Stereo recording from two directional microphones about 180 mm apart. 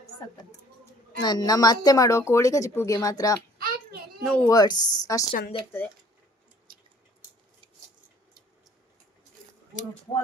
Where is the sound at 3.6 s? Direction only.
55° right (ahead or behind).